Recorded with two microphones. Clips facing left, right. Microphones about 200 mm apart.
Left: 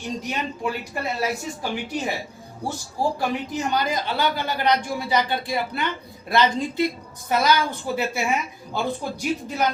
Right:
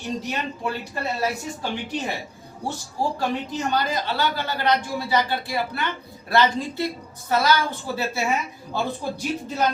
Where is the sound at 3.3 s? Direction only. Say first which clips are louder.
Even; 15° left (ahead or behind).